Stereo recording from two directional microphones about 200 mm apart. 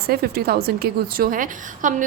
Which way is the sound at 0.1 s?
50° right (ahead or behind).